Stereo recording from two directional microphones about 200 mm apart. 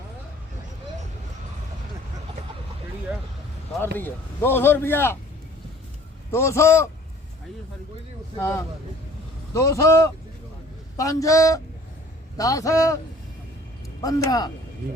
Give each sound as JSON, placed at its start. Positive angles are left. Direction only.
{"t": 3.9, "sound": "a man's voice", "side_deg": 10}
{"t": 6.3, "sound": "a man's voice", "side_deg": 15}
{"t": 8.4, "sound": "a man's voice", "side_deg": 15}
{"t": 14.0, "sound": "a man's voice", "side_deg": 20}